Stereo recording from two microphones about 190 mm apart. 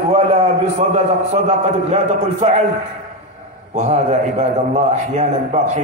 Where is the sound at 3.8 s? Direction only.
35° right (ahead or behind).